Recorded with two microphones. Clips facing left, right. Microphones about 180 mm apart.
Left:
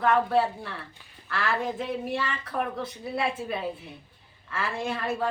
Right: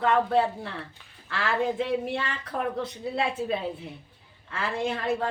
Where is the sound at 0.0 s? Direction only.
20° right (ahead or behind).